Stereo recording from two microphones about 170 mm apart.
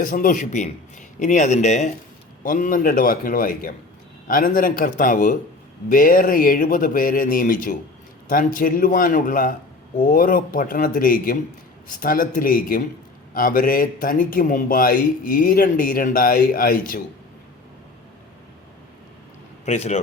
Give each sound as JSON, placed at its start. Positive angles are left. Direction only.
{"t": 0.0, "sound": "a man's voice", "side_deg": 50}
{"t": 19.6, "sound": "speech", "side_deg": 40}